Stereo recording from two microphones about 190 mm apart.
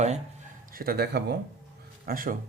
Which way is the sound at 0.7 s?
50° right (ahead or behind).